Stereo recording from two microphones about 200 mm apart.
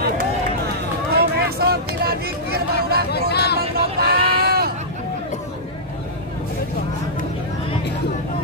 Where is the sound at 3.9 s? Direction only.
50° right (ahead or behind).